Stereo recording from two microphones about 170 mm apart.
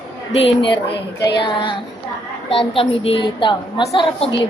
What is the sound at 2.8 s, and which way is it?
Speech, 35° left (ahead or behind).